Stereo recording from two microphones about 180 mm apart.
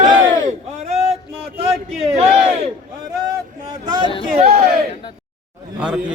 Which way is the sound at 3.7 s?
25° right (ahead or behind).